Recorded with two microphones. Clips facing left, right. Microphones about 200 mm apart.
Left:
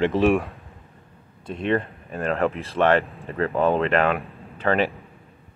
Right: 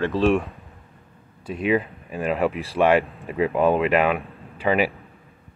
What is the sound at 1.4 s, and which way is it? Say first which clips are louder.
Speech: right 2 dB; 5° right (ahead or behind).